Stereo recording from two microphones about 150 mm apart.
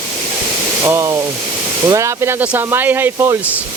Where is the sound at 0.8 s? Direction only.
20° right (ahead or behind).